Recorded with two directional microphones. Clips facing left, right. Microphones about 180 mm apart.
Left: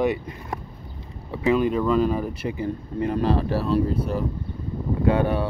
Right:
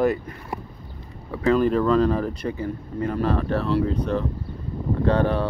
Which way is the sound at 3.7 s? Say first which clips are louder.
Even; 5° left (ahead or behind).